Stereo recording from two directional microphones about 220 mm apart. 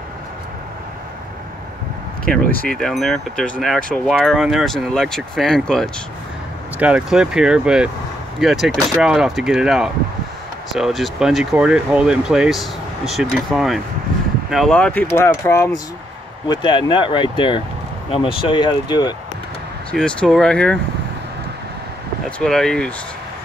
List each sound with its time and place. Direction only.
2.7 s speech: centre (ahead or behind); by 19.1 s 20° left (ahead or behind)
19.9 s speech: 5° left (ahead or behind)
22.4 s speech: 5° left (ahead or behind)